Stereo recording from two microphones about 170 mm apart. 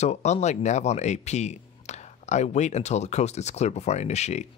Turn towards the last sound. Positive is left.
turn(degrees=40)  # may be behind; listen again after turning